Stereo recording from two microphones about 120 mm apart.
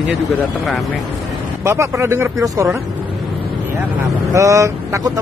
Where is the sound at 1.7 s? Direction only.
20° right (ahead or behind).